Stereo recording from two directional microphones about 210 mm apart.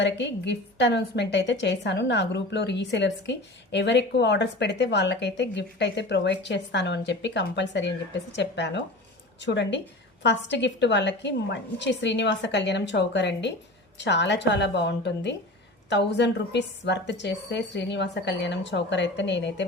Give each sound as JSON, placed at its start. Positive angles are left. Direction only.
{"t": 0.0, "sound": "a woman's voice", "side_deg": 55}